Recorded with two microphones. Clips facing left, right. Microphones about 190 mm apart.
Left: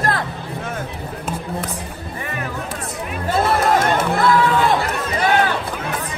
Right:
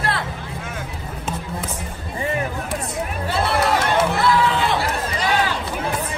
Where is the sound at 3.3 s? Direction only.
45° left (ahead or behind).